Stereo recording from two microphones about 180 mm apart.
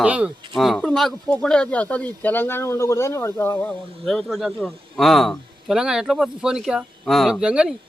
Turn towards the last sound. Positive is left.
turn(degrees=-5)  # may be behind; listen again after turning